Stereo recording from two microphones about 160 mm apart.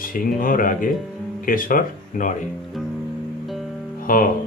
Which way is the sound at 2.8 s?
Centre (ahead or behind).